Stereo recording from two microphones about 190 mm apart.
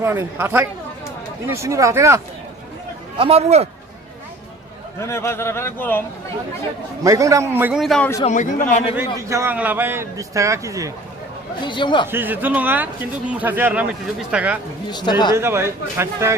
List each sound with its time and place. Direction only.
0.0 s a man's voice: 10° right (ahead or behind)
3.2 s a man's voice: 30° right (ahead or behind)
4.9 s speech: 15° left (ahead or behind)
7.0 s a man's voice: 15° right (ahead or behind); by 8.1 s centre (ahead or behind)
8.2 s a man's voice: 40° left (ahead or behind)
9.1 s a man's voice: 15° right (ahead or behind)
11.6 s speech: 25° left (ahead or behind)
12.1 s a man's voice: 10° right (ahead or behind)
14.8 s speech: 25° left (ahead or behind)
15.4 s a man's voice: 15° right (ahead or behind)